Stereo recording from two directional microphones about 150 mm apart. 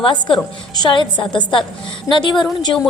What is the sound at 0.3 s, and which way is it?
A woman's voice, 30° left (ahead or behind).